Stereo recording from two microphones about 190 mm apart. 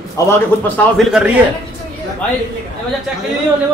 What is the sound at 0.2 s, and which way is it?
Speech, 15° left (ahead or behind).